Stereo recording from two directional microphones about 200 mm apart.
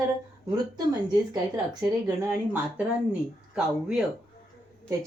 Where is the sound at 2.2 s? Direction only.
10° right (ahead or behind).